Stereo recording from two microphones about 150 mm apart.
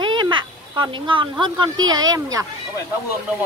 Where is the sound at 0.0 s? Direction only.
30° right (ahead or behind).